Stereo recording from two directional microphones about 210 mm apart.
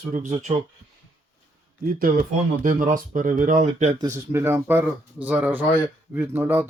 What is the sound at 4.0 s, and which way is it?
Speech, 15° right (ahead or behind).